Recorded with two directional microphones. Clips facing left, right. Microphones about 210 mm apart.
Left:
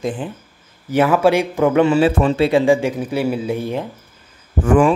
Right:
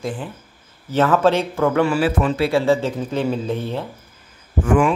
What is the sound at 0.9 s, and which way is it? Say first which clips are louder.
A man's voice: left 2 dB; 10° left (ahead or behind).